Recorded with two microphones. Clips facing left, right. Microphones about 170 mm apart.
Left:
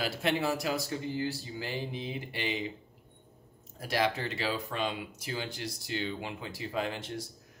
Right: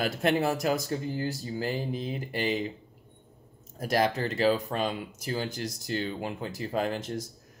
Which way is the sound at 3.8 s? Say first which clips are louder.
Right 4 dB; 45° right (ahead or behind).